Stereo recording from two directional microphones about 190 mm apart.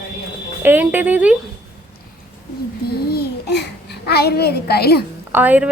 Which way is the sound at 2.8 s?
55° left (ahead or behind).